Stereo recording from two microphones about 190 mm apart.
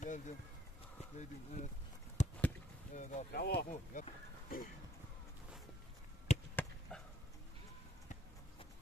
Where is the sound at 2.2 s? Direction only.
40° left (ahead or behind).